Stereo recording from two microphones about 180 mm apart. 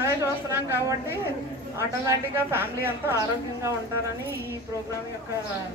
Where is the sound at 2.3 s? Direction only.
10° right (ahead or behind).